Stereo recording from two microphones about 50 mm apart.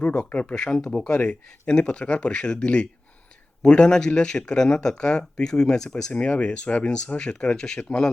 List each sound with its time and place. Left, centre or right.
0.0 s speech: left
0.5 s speech: left
6.1 s speech: left